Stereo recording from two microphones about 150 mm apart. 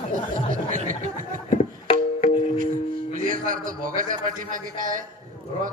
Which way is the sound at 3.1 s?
65° right (ahead or behind).